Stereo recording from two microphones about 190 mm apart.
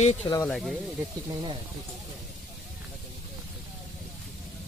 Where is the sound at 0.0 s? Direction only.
35° left (ahead or behind).